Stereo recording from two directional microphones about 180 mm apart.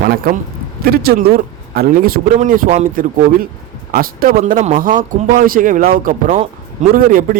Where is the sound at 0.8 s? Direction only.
60° right (ahead or behind).